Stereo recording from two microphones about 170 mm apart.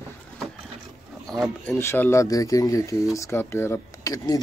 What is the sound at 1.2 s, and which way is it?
Speech, centre (ahead or behind).